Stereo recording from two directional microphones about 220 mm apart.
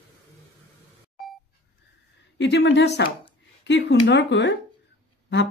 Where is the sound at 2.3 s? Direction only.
55° left (ahead or behind).